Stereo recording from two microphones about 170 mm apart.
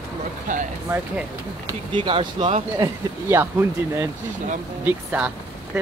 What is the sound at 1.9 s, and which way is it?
Speech, 30° right (ahead or behind).